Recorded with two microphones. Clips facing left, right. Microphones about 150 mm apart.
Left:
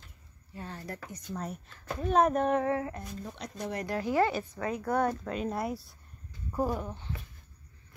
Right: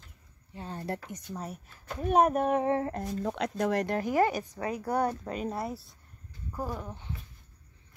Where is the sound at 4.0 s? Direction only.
45° right (ahead or behind).